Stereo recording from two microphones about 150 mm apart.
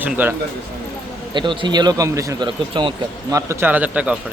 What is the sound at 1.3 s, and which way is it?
Speech, 30° right (ahead or behind).